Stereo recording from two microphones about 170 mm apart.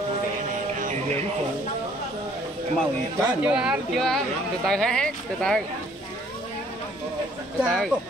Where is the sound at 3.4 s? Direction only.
5° right (ahead or behind).